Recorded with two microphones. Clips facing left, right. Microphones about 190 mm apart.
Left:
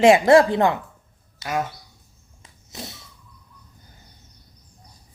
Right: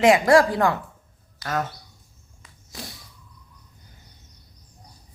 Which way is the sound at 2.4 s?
20° left (ahead or behind).